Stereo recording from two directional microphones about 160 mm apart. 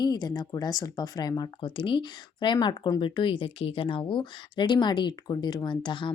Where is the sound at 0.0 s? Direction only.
25° left (ahead or behind).